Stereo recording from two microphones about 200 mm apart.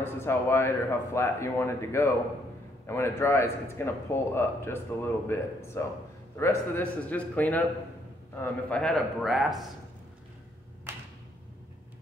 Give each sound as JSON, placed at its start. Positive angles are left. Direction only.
{"t": 0.0, "sound": "a man's voice", "side_deg": 10}